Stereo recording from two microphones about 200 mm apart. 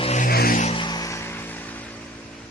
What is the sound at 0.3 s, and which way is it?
Vehicle, 45° left (ahead or behind).